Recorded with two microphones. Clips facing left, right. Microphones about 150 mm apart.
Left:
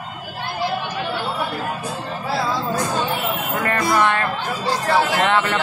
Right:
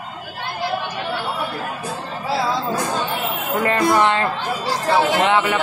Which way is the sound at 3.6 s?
20° right (ahead or behind).